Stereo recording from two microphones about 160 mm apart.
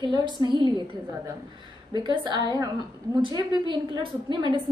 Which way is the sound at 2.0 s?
30° right (ahead or behind).